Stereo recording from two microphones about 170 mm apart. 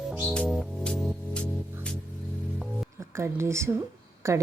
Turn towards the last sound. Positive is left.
turn(degrees=-15)  # may be behind; listen again after turning